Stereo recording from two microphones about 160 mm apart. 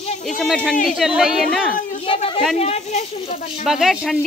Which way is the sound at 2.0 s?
35° left (ahead or behind).